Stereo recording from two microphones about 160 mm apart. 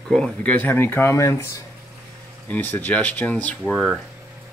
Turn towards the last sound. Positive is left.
turn(degrees=0)  # may be behind; listen again after turning